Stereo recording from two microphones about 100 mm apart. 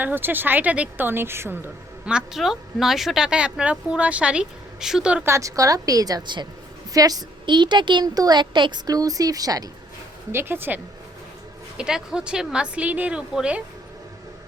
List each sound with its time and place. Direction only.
0.0 s a woman's voice: 20° right (ahead or behind)
2.0 s speech: 5° right (ahead or behind)
5.2 s a woman's voice: 30° right (ahead or behind); by 8.8 s 50° right (ahead or behind)
8.9 s a woman's voice: 35° right (ahead or behind)
10.3 s a woman's voice: 20° right (ahead or behind)
11.8 s speech: 5° right (ahead or behind)